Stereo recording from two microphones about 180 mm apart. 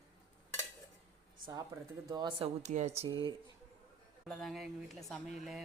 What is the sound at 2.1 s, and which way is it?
Speech, 25° right (ahead or behind).